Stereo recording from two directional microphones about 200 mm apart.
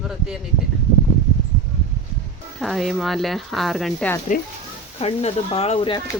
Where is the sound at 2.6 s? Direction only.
Centre (ahead or behind).